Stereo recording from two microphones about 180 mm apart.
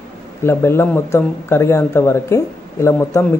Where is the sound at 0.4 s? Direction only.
15° left (ahead or behind).